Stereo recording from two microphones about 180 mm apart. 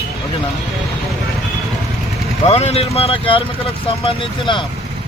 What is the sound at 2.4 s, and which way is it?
Speech, 35° left (ahead or behind).